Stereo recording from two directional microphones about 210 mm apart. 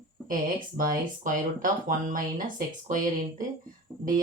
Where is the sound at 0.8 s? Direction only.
40° right (ahead or behind).